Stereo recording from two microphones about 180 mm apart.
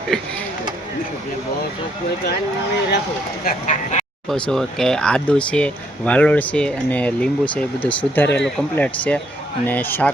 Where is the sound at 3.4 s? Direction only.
45° left (ahead or behind).